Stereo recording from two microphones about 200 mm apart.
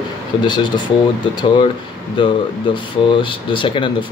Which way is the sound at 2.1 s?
25° left (ahead or behind).